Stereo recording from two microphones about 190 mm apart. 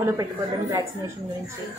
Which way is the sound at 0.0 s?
20° right (ahead or behind).